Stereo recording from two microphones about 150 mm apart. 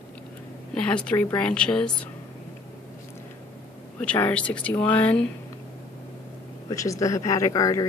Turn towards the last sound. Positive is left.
turn(degrees=25)  # may be behind; listen again after turning